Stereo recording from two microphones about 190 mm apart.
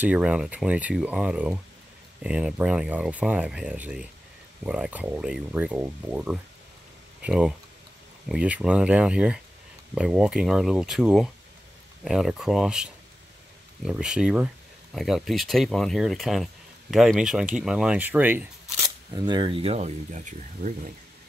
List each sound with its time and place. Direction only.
0.0 s speech: 5° right (ahead or behind)
19.1 s speech: 25° right (ahead or behind); by 20.9 s 40° right (ahead or behind)